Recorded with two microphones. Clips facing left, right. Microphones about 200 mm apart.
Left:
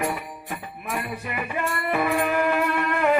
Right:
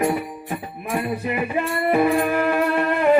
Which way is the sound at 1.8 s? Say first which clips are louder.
Right 8 dB; 35° right (ahead or behind).